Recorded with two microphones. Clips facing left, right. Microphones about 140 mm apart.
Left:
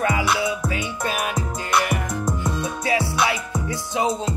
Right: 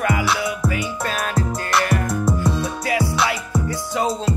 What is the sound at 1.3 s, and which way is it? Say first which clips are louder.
Music: right 2 dB; 15° left (ahead or behind).